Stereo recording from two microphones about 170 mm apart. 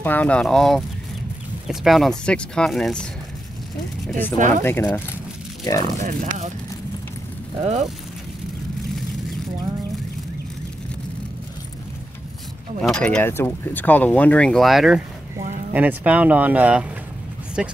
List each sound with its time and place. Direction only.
0.0 s speech: 10° left (ahead or behind)
4.4 s speech: 45° right (ahead or behind)
4.6 s speech: 10° left (ahead or behind)
5.9 s speech: 45° right (ahead or behind)
7.5 s speech: 40° right (ahead or behind)
12.8 s speech: 5° left (ahead or behind)